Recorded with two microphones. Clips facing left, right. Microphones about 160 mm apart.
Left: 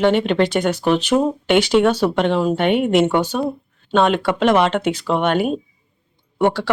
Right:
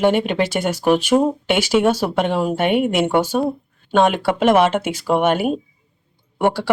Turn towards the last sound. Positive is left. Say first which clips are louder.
# even
turn(degrees=-10)  # may be behind; listen again after turning